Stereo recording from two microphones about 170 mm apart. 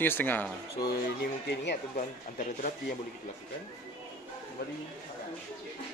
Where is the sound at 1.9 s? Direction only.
50° left (ahead or behind).